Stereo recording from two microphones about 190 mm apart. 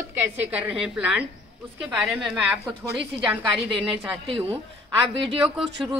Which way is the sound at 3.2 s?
Centre (ahead or behind).